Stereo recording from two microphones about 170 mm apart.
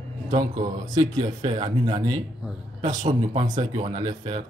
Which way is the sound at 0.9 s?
25° right (ahead or behind).